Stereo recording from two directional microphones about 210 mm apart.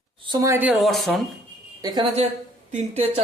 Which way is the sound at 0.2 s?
20° right (ahead or behind).